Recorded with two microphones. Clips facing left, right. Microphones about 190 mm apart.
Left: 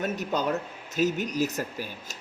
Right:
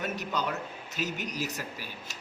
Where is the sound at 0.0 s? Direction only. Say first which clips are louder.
Left 5 dB; 45° left (ahead or behind).